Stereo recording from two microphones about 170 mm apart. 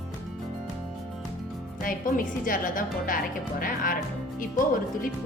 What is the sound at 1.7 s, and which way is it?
A woman's voice, 55° left (ahead or behind).